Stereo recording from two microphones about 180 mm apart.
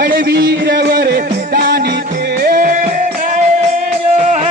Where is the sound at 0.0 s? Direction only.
60° right (ahead or behind).